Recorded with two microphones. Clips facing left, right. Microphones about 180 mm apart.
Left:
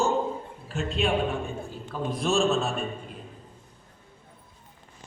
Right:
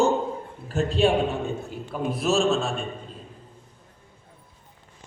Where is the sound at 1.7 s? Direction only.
15° right (ahead or behind).